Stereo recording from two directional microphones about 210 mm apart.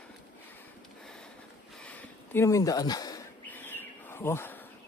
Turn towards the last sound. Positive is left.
turn(degrees=10)  # may be behind; listen again after turning